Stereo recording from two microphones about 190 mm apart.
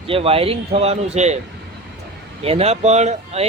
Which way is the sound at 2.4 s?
30° right (ahead or behind).